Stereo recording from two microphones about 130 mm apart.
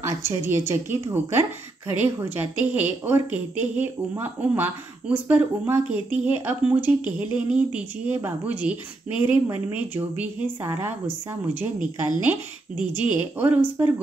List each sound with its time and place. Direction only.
0.0 s a woman's voice: 20° right (ahead or behind)